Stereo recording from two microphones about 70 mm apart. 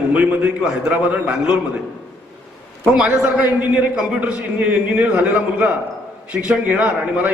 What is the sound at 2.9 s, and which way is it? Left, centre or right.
Speech, centre.